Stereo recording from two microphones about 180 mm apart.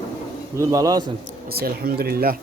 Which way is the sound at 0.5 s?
20° right (ahead or behind).